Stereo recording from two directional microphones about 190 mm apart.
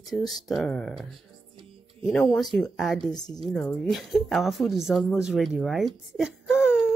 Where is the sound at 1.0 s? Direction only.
25° right (ahead or behind).